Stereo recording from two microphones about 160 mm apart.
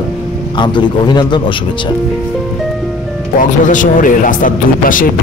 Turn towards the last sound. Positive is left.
turn(degrees=55)  # may be behind; listen again after turning